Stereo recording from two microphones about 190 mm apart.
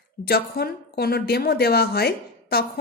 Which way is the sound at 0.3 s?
50° left (ahead or behind).